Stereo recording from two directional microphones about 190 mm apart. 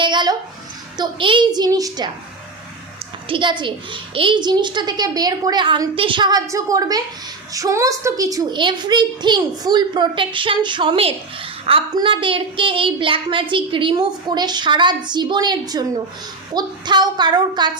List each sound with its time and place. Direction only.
0.0 s a sound: 25° right (ahead or behind)
0.9 s a woman's voice: 25° right (ahead or behind)
3.2 s a woman's voice: 25° right (ahead or behind)